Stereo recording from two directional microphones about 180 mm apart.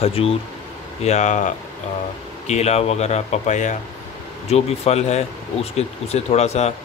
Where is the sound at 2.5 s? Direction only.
35° left (ahead or behind).